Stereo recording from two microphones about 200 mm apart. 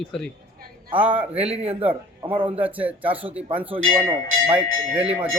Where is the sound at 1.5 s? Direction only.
30° right (ahead or behind).